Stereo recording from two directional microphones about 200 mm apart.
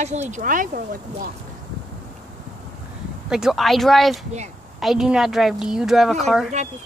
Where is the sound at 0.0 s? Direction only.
35° right (ahead or behind).